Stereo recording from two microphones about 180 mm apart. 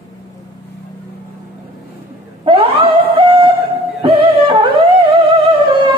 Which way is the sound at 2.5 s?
30° right (ahead or behind).